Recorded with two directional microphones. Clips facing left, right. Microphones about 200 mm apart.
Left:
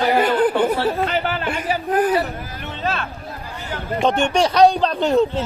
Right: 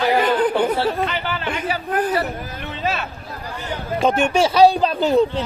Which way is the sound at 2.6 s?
5° right (ahead or behind).